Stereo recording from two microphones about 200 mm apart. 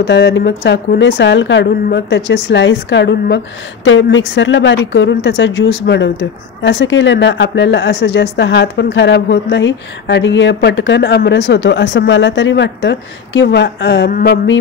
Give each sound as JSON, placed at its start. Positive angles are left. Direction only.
{"t": 0.0, "sound": "speech", "side_deg": 55}
{"t": 3.8, "sound": "speech", "side_deg": 70}